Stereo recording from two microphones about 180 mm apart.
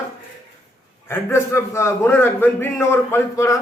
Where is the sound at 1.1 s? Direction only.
15° left (ahead or behind).